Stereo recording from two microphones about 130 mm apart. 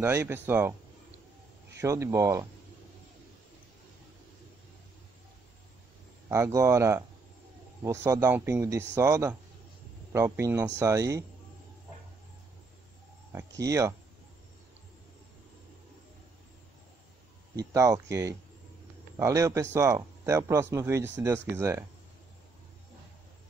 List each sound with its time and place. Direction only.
0.0 s speech: 20° right (ahead or behind)
1.8 s speech: 25° right (ahead or behind)
6.2 s speech: 25° right (ahead or behind)
13.3 s speech: 20° right (ahead or behind)
17.6 s speech: 25° right (ahead or behind)